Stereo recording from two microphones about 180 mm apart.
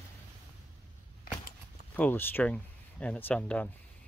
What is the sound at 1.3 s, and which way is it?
Typewriter, 55° left (ahead or behind).